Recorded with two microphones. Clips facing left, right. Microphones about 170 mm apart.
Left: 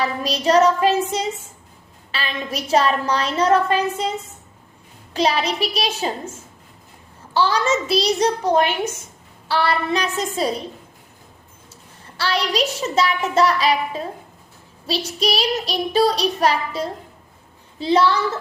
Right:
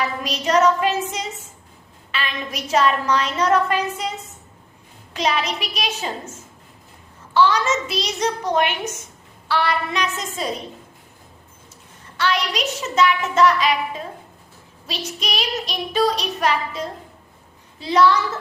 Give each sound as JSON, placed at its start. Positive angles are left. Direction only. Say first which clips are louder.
{"t": 0.0, "sound": "child singing", "louder": "left 3 dB", "side_deg": 30}
{"t": 5.1, "sound": "child singing", "louder": "left 3 dB", "side_deg": 35}
{"t": 7.3, "sound": "child singing", "louder": "right 1 dB", "side_deg": 30}
{"t": 12.1, "sound": "child singing", "louder": "left 1 dB", "side_deg": 35}
{"t": 17.7, "sound": "a woman's voice", "louder": "even", "side_deg": 30}